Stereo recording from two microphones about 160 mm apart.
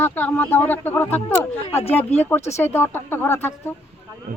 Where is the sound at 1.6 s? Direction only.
40° left (ahead or behind).